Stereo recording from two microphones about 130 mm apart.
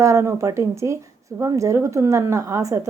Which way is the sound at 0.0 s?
20° right (ahead or behind).